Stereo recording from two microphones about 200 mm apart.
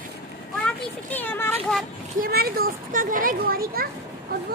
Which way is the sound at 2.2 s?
50° right (ahead or behind).